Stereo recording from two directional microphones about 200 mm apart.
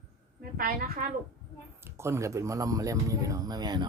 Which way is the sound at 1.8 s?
15° right (ahead or behind).